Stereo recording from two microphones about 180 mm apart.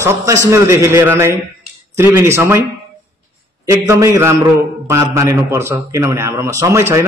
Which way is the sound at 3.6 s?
15° right (ahead or behind).